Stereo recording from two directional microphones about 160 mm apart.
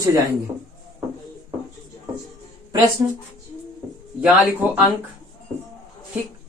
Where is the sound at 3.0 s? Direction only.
20° right (ahead or behind).